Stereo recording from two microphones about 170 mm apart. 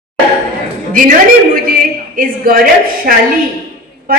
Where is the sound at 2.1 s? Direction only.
55° right (ahead or behind).